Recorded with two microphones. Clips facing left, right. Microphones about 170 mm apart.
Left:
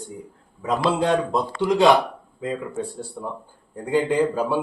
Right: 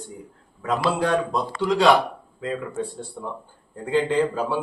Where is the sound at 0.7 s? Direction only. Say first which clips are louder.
Left 2 dB; 20° left (ahead or behind).